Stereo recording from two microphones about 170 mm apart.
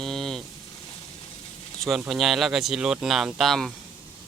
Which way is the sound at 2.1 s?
Centre (ahead or behind).